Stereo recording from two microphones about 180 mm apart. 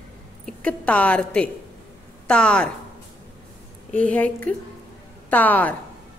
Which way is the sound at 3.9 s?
10° left (ahead or behind).